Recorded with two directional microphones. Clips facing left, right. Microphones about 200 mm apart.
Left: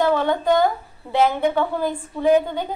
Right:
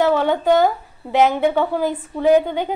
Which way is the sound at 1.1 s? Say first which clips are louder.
Right 3 dB; 15° right (ahead or behind).